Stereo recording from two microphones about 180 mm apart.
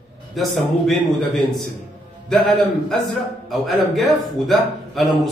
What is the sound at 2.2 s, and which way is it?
A man's voice, centre (ahead or behind).